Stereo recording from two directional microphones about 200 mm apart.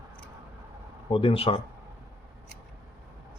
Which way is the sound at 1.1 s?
30° left (ahead or behind).